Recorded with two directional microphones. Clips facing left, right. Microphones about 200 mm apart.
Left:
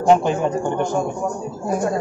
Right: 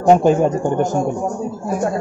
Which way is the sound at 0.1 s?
45° right (ahead or behind).